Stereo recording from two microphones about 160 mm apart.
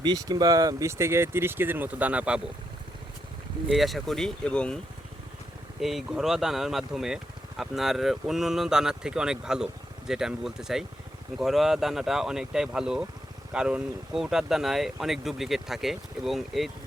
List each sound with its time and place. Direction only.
0.0 s speech: 25° right (ahead or behind); by 2.4 s 10° right (ahead or behind)
3.7 s speech: centre (ahead or behind)
5.8 s speech: centre (ahead or behind)